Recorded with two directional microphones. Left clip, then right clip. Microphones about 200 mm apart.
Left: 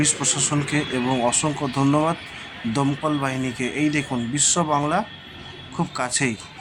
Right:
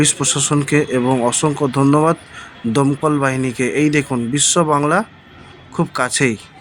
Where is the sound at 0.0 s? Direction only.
20° right (ahead or behind).